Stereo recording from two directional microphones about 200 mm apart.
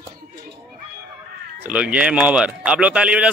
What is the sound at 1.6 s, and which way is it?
Speech, 5° right (ahead or behind).